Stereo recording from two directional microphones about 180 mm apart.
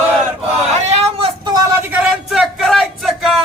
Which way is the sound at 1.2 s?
25° right (ahead or behind).